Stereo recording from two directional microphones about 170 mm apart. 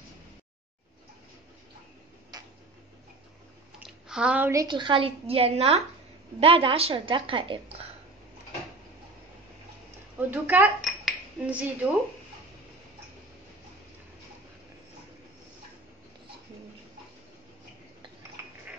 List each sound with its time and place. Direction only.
4.1 s a woman's voice: 5° right (ahead or behind); by 7.7 s 30° right (ahead or behind)
10.1 s a woman's voice: 10° right (ahead or behind)
10.9 s cutlery: 5° right (ahead or behind)